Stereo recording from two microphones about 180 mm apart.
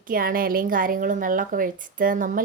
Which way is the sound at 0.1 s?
50° right (ahead or behind).